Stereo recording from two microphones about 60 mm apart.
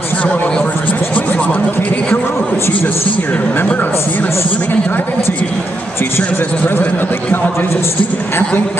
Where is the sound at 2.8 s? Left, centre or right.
Left.